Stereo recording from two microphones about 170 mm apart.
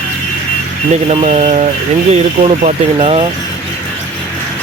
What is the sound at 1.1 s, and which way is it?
Speech, 35° right (ahead or behind).